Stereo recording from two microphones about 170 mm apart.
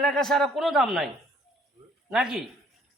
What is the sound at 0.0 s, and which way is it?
A man's voice, 5° left (ahead or behind).